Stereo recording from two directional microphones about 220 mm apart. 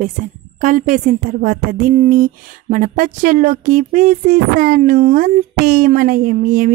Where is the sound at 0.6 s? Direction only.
35° right (ahead or behind).